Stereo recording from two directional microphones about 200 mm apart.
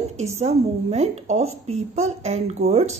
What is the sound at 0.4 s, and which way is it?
A woman's voice, 35° right (ahead or behind).